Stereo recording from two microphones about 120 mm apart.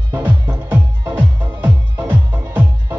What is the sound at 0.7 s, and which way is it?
Music, 15° right (ahead or behind).